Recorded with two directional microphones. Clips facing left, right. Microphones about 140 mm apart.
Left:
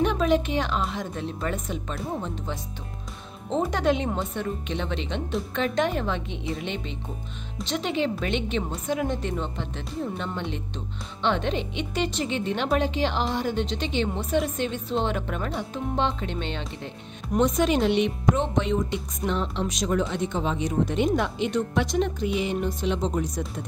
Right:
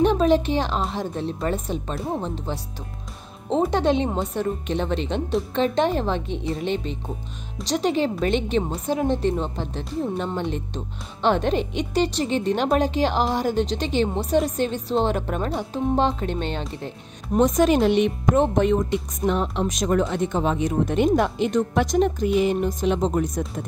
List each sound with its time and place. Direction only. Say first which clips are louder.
0.0 s a woman's voice: right 4 dB; 35° right (ahead or behind)
3.7 s a woman's voice: right 3 dB; 30° right (ahead or behind); by 23.4 s 50° right (ahead or behind)